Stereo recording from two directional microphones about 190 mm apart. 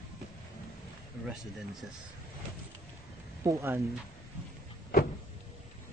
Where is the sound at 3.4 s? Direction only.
20° right (ahead or behind).